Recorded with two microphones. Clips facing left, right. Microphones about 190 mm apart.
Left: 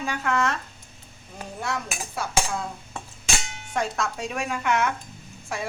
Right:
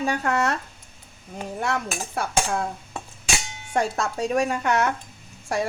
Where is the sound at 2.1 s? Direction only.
55° right (ahead or behind).